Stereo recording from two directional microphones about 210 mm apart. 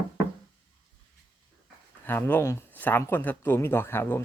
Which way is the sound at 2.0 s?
10° left (ahead or behind).